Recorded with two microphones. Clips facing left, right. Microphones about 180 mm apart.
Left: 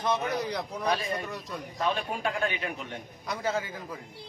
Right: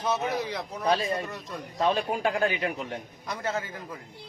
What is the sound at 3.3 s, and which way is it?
Speech, centre (ahead or behind).